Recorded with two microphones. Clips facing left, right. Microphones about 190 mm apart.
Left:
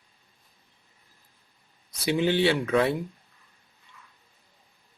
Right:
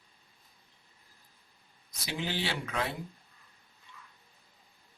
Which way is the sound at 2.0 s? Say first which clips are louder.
Left 12 dB; 60° left (ahead or behind).